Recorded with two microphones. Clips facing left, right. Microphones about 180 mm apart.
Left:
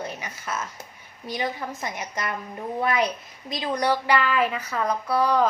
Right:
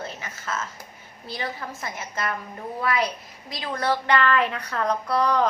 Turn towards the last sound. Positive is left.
turn(degrees=5)  # may be behind; listen again after turning